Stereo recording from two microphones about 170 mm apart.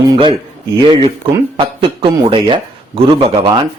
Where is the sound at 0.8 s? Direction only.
30° right (ahead or behind).